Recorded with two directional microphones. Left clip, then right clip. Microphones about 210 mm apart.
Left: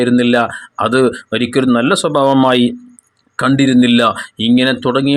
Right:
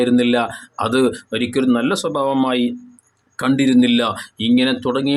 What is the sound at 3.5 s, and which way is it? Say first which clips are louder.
Speech: left 3 dB; 15° left (ahead or behind).